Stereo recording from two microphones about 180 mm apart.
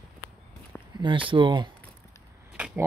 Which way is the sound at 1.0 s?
25° right (ahead or behind).